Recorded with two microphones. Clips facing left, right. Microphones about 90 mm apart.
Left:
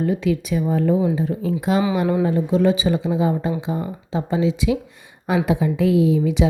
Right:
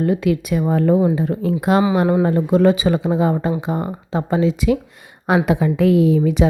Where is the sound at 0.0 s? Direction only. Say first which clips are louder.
Right 3 dB; 60° right (ahead or behind).